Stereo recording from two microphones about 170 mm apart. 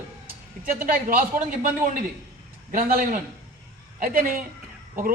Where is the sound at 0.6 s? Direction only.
50° right (ahead or behind).